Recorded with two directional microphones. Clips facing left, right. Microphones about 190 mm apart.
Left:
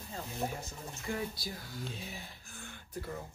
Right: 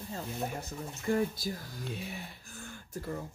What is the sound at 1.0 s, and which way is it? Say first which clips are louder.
Speech: right 8 dB; 45° right (ahead or behind).